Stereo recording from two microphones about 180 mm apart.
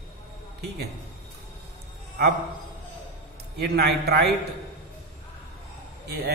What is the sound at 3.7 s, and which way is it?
Speech, 65° right (ahead or behind).